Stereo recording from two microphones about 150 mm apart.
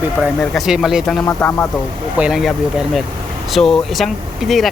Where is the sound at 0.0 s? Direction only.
5° right (ahead or behind).